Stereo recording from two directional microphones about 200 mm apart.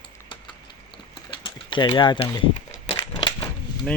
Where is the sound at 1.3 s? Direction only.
25° left (ahead or behind).